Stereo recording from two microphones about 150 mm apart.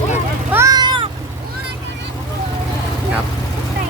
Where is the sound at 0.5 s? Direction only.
20° right (ahead or behind).